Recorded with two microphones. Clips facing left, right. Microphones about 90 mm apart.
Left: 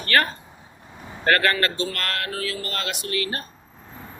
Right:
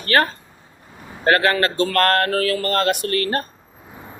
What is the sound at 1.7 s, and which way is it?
Speech, 50° right (ahead or behind).